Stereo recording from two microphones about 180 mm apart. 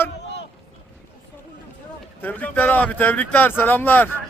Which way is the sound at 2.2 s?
10° left (ahead or behind).